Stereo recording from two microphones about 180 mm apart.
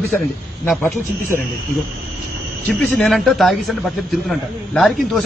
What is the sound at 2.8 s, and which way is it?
A man's voice, 5° left (ahead or behind).